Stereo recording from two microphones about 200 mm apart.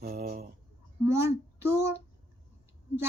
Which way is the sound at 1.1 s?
10° right (ahead or behind).